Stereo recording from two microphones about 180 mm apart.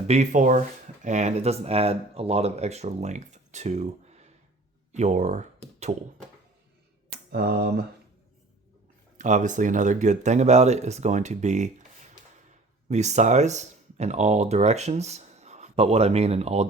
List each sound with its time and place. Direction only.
0.1 s speech: 40° right (ahead or behind)
7.3 s speech: 60° right (ahead or behind)
9.1 s speech: 45° right (ahead or behind)
12.9 s speech: 40° right (ahead or behind)